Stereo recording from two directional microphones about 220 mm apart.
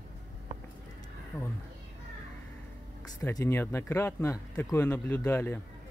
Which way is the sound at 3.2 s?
10° left (ahead or behind).